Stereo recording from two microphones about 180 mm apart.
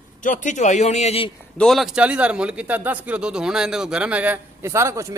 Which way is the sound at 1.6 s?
Centre (ahead or behind).